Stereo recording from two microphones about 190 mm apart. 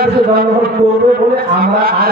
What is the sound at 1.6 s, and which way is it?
Speech, 50° right (ahead or behind).